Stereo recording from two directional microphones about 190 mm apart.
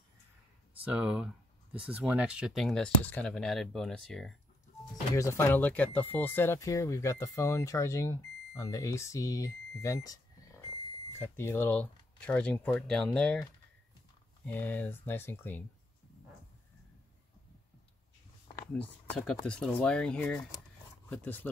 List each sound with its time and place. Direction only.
0.8 s speech: 5° right (ahead or behind)
5.1 s speech: 10° left (ahead or behind)
18.8 s speech: centre (ahead or behind)